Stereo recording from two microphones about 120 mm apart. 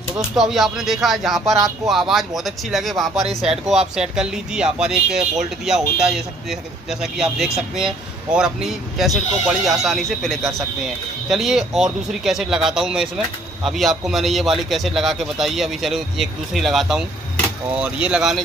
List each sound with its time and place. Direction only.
0.4 s speech: centre (ahead or behind)